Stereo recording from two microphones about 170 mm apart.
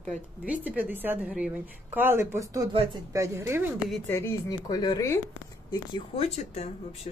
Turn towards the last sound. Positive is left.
turn(degrees=40)  # may be behind; listen again after turning